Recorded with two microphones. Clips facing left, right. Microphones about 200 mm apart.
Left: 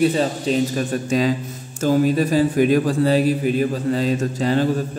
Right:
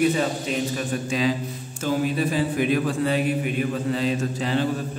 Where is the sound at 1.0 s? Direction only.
45° left (ahead or behind).